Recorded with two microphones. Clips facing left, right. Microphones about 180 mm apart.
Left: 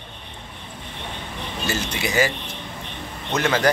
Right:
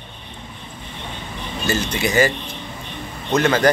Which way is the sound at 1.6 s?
5° left (ahead or behind).